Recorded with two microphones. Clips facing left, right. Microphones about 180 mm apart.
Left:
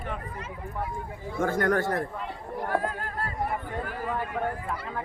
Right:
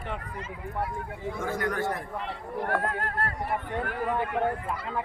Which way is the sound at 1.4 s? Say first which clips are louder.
Left 6 dB; 55° left (ahead or behind).